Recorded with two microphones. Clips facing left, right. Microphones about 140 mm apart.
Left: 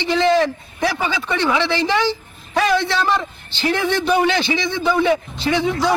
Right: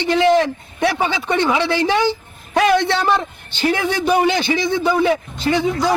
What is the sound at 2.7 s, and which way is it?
Speech, 60° right (ahead or behind).